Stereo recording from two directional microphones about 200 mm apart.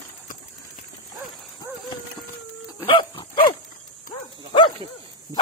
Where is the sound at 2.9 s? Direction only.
25° left (ahead or behind).